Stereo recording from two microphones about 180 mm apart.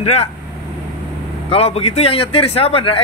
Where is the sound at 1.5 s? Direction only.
35° left (ahead or behind).